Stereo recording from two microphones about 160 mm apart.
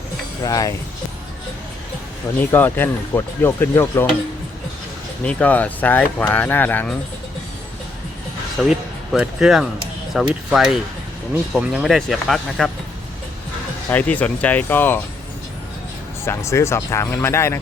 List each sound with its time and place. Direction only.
0.4 s speech: 25° left (ahead or behind)
2.4 s speech: 10° left (ahead or behind)
5.2 s speech: 10° left (ahead or behind)
8.6 s speech: 5° right (ahead or behind)
13.9 s speech: 10° left (ahead or behind)
16.2 s speech: 20° left (ahead or behind)